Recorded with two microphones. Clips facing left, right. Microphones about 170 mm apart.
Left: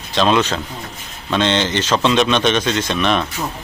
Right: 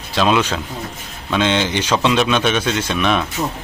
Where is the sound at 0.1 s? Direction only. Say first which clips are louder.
Left 1 dB; 5° right (ahead or behind).